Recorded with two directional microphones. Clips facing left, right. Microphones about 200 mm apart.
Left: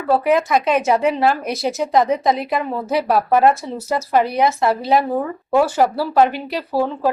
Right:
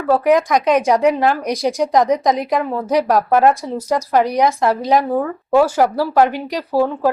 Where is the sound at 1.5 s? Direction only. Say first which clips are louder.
Right 3 dB; 15° right (ahead or behind).